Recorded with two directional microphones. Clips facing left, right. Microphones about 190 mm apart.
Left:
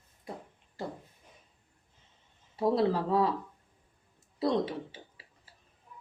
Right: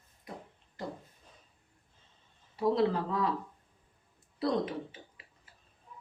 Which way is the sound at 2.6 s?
30° left (ahead or behind).